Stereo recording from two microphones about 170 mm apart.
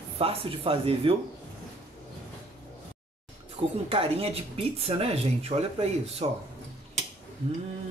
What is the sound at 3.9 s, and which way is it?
Speech, 35° right (ahead or behind).